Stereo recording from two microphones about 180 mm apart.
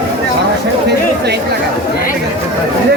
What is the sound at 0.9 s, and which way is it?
Speech, 65° right (ahead or behind).